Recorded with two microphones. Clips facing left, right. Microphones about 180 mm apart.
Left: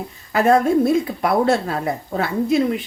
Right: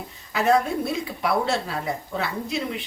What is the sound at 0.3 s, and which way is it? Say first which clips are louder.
Speech: left 6 dB; 50° left (ahead or behind).